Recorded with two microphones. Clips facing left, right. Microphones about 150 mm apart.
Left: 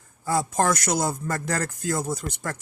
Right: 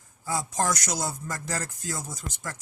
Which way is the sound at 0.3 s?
60° left (ahead or behind).